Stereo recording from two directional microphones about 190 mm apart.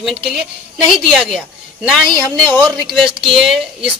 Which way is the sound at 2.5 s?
Centre (ahead or behind).